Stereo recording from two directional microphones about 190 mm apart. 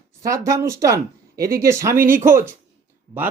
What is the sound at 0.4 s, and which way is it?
Speech, 15° right (ahead or behind).